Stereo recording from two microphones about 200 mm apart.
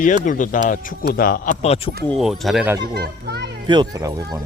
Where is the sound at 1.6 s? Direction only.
30° left (ahead or behind).